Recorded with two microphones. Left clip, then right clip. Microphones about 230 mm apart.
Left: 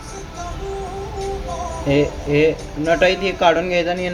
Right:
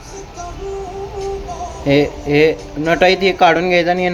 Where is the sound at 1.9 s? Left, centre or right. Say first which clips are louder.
Right 4 dB; right.